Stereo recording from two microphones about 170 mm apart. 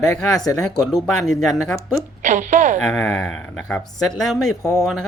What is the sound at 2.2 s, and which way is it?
Speech, 45° right (ahead or behind).